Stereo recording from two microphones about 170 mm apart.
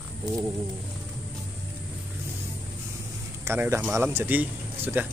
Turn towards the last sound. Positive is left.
turn(degrees=-10)  # may be behind; listen again after turning